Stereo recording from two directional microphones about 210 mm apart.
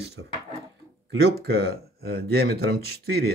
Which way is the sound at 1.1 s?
50° right (ahead or behind).